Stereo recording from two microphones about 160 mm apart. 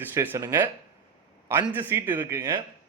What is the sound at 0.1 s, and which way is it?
Speech, 15° right (ahead or behind).